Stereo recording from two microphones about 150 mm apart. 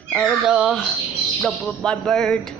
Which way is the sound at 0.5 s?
5° right (ahead or behind).